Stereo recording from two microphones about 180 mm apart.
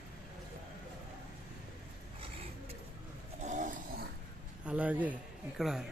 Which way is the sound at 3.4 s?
45° right (ahead or behind).